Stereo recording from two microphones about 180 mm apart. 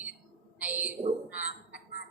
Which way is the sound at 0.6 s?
10° right (ahead or behind).